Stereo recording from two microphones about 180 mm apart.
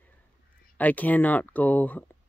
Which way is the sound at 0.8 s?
10° left (ahead or behind).